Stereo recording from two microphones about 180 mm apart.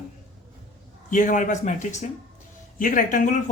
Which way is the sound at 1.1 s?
45° left (ahead or behind).